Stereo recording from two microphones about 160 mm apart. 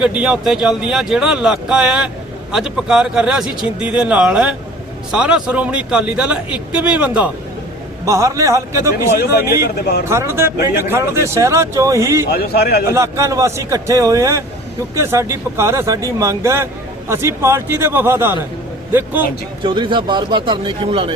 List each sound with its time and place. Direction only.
0.0 s speech: 5° right (ahead or behind)
8.0 s a man's voice: 20° right (ahead or behind)
9.6 s speech: 85° left
10.1 s speech: 15° right (ahead or behind)
12.3 s a man's voice: 80° left
12.9 s a man's voice: 20° right (ahead or behind)
19.6 s a man's voice: 30° right (ahead or behind)